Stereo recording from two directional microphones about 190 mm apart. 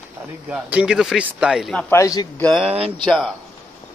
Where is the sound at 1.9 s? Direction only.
20° left (ahead or behind).